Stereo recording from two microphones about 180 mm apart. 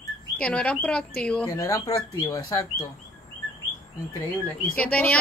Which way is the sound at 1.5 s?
20° left (ahead or behind).